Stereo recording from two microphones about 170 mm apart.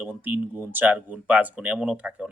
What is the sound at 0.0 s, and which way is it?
Speech, 10° right (ahead or behind).